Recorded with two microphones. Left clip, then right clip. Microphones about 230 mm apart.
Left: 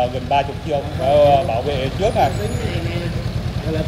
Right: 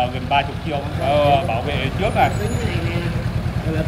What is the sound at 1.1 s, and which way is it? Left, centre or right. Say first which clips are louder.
Speech: left 3 dB; centre.